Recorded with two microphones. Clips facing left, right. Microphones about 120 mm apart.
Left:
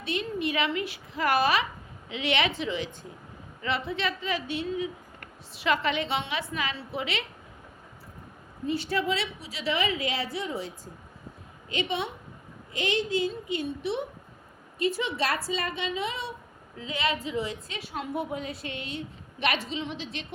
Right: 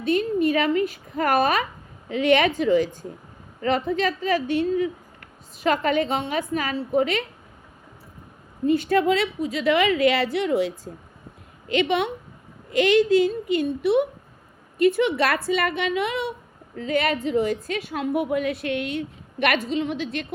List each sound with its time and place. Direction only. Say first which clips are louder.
0.0 s a woman's voice: right 9 dB; 45° right (ahead or behind)
8.6 s a woman's voice: right 9 dB; 50° right (ahead or behind); by 10.8 s 80° right
11.7 s a woman's voice: right 9 dB; 65° right (ahead or behind)